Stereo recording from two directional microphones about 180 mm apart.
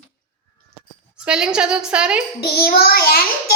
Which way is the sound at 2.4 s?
60° left (ahead or behind).